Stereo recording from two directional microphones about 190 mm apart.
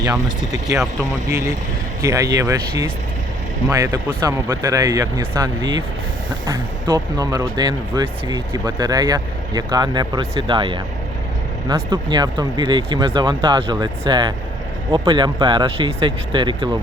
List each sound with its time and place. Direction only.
0.0 s speech: 20° right (ahead or behind)